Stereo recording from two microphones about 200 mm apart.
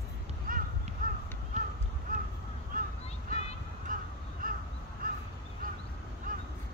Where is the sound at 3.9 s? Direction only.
45° right (ahead or behind).